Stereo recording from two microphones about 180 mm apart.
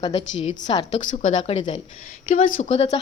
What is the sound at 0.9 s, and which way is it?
Speech, 45° left (ahead or behind).